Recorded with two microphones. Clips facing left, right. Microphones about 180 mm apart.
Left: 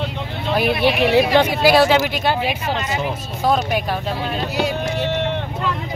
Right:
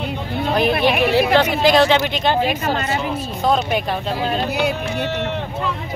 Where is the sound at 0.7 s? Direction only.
55° right (ahead or behind).